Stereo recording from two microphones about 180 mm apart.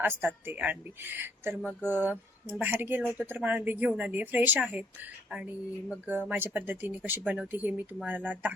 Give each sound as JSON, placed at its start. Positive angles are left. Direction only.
{"t": 0.0, "sound": "speech", "side_deg": -10}
{"t": 1.8, "sound": "speech", "side_deg": -10}
{"t": 5.9, "sound": "speech", "side_deg": -10}